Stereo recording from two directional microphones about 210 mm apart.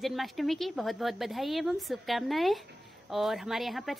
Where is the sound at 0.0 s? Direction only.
Centre (ahead or behind).